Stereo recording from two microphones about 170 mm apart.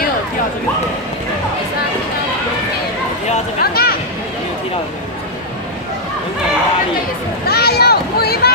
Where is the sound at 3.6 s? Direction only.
65° left (ahead or behind).